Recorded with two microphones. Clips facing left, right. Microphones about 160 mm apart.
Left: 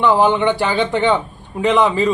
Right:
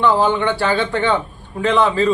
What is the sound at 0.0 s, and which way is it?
Speech, 15° left (ahead or behind).